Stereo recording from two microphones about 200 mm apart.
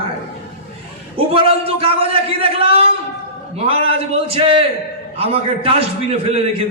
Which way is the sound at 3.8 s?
30° right (ahead or behind).